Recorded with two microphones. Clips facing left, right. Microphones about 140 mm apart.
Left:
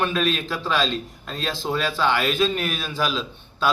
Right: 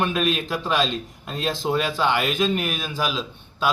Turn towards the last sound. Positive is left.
turn(degrees=-10)  # may be behind; listen again after turning